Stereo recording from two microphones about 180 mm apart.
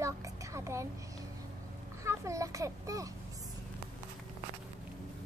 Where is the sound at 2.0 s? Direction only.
15° right (ahead or behind).